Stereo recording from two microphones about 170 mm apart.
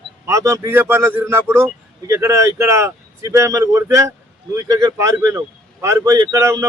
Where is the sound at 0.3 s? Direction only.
15° right (ahead or behind).